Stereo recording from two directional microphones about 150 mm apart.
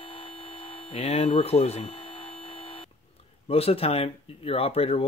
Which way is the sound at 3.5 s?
40° left (ahead or behind).